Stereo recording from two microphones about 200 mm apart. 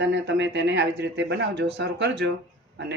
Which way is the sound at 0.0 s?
60° right (ahead or behind).